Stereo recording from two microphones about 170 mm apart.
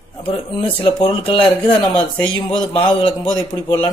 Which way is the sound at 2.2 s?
5° left (ahead or behind).